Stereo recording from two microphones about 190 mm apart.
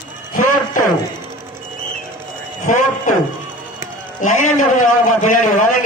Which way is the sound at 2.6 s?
40° left (ahead or behind).